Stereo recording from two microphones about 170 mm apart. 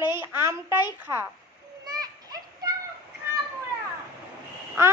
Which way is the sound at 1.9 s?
20° right (ahead or behind).